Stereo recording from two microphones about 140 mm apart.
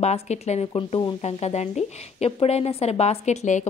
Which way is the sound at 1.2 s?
50° left (ahead or behind).